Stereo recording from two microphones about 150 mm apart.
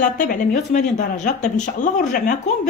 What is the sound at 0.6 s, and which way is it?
Speech, 55° left (ahead or behind).